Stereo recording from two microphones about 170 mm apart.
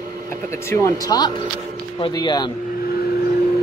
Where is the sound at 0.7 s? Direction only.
20° left (ahead or behind).